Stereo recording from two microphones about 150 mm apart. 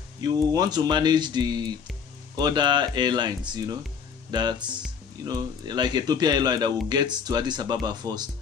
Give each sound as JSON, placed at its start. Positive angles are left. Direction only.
{"t": 0.2, "sound": "speech", "side_deg": -25}